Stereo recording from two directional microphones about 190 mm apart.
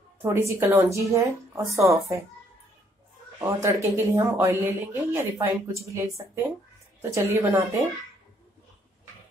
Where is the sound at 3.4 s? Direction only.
15° right (ahead or behind).